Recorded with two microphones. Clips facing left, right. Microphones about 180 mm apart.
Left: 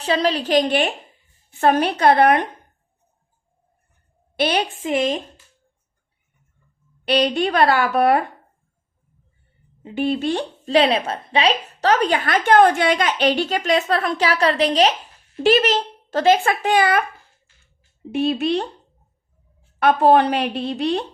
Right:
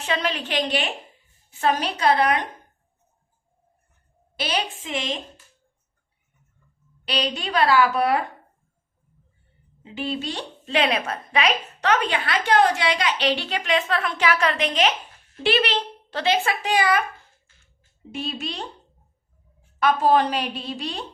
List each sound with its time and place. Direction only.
0.0 s a woman's voice: 35° left (ahead or behind); by 2.4 s 55° left (ahead or behind)
4.4 s a woman's voice: 55° left (ahead or behind)
7.1 s a woman's voice: 55° left (ahead or behind)
9.8 s a woman's voice: 50° left (ahead or behind)
10.7 s a woman's voice: 35° left (ahead or behind); by 17.0 s 60° left (ahead or behind)
18.1 s a woman's voice: 60° left (ahead or behind)
19.8 s a woman's voice: 60° left (ahead or behind)